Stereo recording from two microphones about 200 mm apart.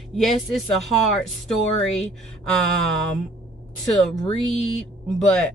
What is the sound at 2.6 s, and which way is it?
Speech, 5° left (ahead or behind).